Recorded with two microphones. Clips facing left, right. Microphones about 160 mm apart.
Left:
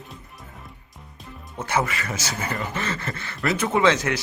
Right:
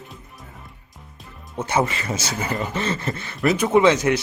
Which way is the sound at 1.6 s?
25° right (ahead or behind).